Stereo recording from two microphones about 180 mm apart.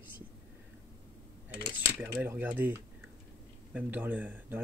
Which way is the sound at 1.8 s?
15° right (ahead or behind).